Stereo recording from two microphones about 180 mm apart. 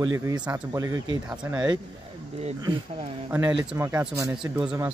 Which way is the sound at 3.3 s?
10° right (ahead or behind).